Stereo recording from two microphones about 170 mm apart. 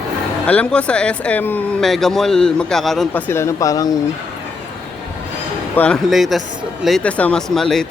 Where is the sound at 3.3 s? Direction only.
15° left (ahead or behind).